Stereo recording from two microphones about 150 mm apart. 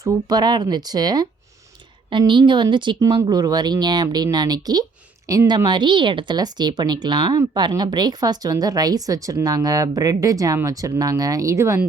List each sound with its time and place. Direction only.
0.0 s a woman's voice: 25° right (ahead or behind)